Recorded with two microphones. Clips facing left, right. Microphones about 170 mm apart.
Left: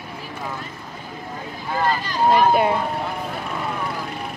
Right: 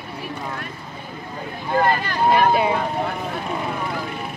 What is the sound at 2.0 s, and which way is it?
Speech, 60° right (ahead or behind).